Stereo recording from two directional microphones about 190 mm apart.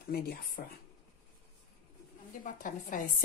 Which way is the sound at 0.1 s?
55° left (ahead or behind).